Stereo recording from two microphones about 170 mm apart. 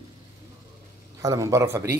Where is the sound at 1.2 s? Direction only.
20° right (ahead or behind).